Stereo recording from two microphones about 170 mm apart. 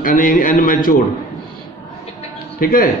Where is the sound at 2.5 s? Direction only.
60° left (ahead or behind).